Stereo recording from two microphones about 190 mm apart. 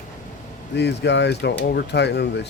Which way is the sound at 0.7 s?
65° left (ahead or behind).